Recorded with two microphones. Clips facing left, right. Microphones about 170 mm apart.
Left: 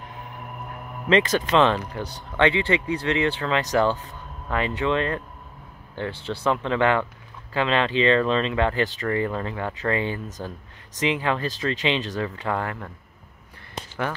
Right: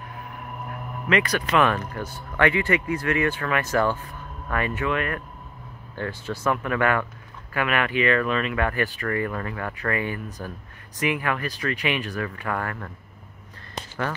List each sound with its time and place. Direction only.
1.0 s speech: 25° left (ahead or behind)